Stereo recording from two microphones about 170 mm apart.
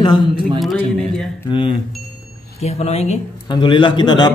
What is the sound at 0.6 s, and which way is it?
Speech, centre (ahead or behind).